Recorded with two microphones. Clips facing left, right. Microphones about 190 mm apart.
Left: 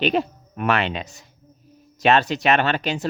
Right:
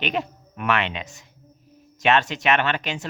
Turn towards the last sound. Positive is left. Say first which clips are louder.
# left 4 dB
turn(degrees=35)  # may be behind; listen again after turning